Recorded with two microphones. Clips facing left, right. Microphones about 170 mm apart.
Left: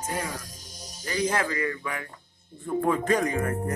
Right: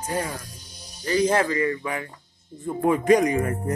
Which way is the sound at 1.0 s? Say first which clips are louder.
Right 6 dB; 30° right (ahead or behind).